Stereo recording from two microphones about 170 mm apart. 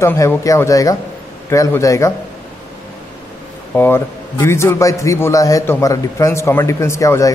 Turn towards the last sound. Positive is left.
turn(degrees=15)  # may be behind; listen again after turning